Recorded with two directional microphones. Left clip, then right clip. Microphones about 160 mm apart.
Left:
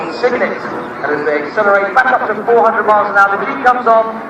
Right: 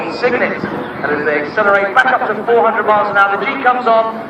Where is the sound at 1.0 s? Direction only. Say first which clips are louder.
Even; 30° left (ahead or behind).